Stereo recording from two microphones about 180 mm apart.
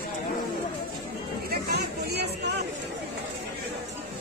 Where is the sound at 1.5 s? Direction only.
60° right (ahead or behind).